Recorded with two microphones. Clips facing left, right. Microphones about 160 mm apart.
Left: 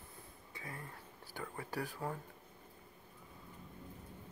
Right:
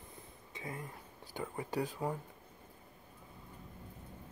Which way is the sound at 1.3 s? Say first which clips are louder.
Right 5 dB; 20° right (ahead or behind).